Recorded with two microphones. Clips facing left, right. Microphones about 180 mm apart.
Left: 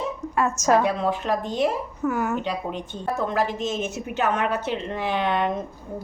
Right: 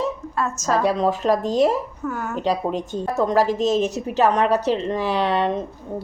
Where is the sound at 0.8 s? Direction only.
40° right (ahead or behind).